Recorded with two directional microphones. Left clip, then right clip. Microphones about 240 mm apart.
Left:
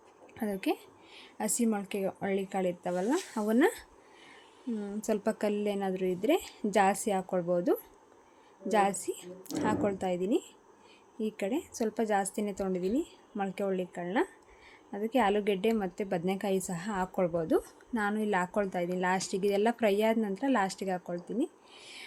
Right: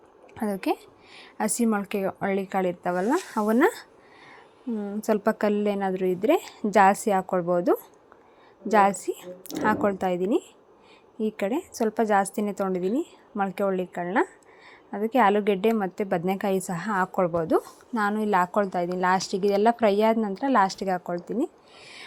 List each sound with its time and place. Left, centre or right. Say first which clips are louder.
0.3 s a woman's voice: right 6 dB; centre